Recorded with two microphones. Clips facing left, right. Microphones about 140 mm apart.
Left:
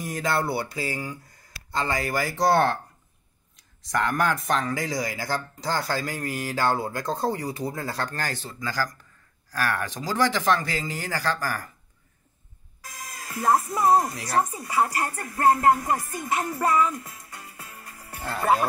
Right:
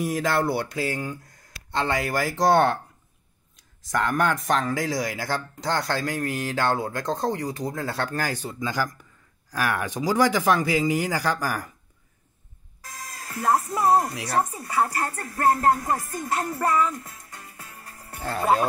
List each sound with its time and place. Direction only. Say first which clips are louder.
0.0 s speech: right 3 dB; centre (ahead or behind)
3.8 s speech: right 1 dB; centre (ahead or behind)
13.3 s speech: left 1 dB; 10° left (ahead or behind)
13.7 s speech: even; 5° right (ahead or behind)
14.9 s music: even; 20° left (ahead or behind)
16.1 s speech: even; 10° left (ahead or behind)
17.0 s music: left 1 dB; 15° left (ahead or behind)